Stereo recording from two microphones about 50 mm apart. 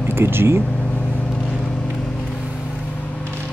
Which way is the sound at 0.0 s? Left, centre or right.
Right.